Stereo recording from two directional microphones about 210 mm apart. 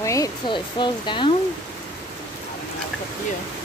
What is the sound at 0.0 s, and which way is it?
Speech, 15° left (ahead or behind).